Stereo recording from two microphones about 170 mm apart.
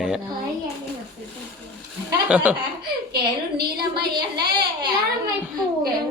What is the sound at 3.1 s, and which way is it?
Speech, 70° right (ahead or behind).